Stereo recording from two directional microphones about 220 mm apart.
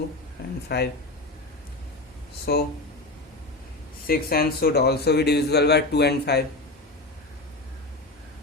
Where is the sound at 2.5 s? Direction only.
45° left (ahead or behind).